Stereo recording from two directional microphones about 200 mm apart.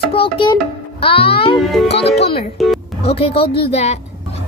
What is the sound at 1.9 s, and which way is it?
Speech, 55° left (ahead or behind).